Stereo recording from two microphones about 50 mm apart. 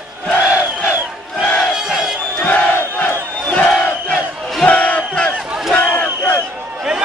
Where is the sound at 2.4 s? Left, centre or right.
Left.